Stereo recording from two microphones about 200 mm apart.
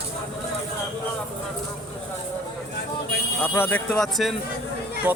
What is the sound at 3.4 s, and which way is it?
Speech, 10° left (ahead or behind).